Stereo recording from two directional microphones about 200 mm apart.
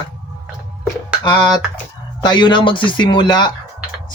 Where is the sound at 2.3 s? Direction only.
20° left (ahead or behind).